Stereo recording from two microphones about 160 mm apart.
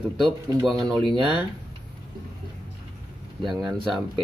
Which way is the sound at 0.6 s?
Centre (ahead or behind).